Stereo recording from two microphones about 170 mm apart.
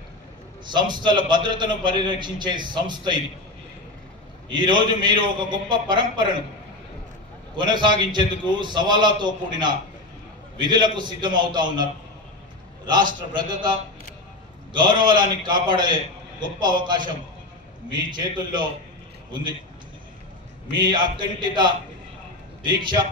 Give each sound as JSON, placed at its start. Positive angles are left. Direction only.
{"t": 0.7, "sound": "a man's voice", "side_deg": -25}
{"t": 4.5, "sound": "a man's voice", "side_deg": -25}
{"t": 7.5, "sound": "a man's voice", "side_deg": -25}
{"t": 13.3, "sound": "a man's voice", "side_deg": -25}
{"t": 20.7, "sound": "a man's voice", "side_deg": -25}